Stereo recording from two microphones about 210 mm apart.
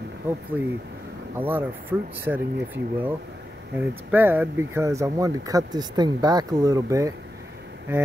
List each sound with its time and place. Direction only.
0.5 s speech: 10° right (ahead or behind)